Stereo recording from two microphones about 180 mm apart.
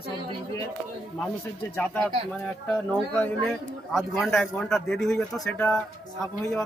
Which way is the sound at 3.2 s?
5° left (ahead or behind).